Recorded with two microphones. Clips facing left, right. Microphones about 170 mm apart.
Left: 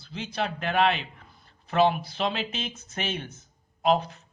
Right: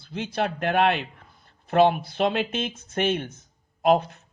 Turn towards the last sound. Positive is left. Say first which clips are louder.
# right 3 dB
turn(degrees=-55)  # may be behind; listen again after turning